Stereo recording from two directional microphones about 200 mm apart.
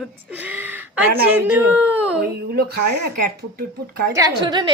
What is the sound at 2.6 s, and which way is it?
Speech, 55° right (ahead or behind).